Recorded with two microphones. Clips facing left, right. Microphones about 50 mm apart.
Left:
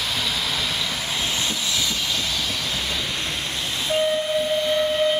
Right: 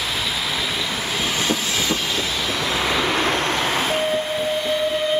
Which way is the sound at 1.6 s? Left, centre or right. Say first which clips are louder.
Right 3 dB; right.